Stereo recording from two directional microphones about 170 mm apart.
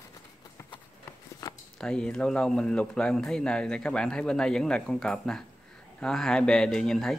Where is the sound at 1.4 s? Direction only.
25° left (ahead or behind).